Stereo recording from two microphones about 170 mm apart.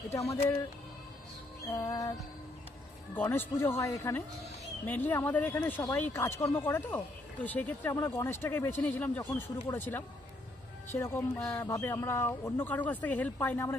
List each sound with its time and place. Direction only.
0.1 s music: 20° left (ahead or behind)
1.7 s music: 20° left (ahead or behind)
3.2 s speech: 10° left (ahead or behind)